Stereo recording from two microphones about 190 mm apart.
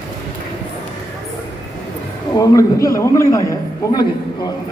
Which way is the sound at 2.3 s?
20° left (ahead or behind).